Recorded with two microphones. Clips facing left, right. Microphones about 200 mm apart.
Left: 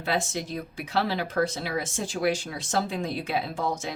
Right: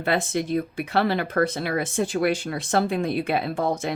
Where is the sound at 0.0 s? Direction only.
55° right (ahead or behind).